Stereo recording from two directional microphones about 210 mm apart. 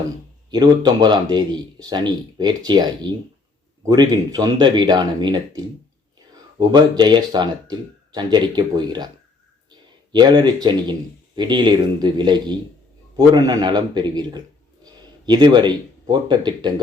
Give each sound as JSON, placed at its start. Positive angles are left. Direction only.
{"t": 0.5, "sound": "a man's voice", "side_deg": -20}
{"t": 10.1, "sound": "a man's voice", "side_deg": -20}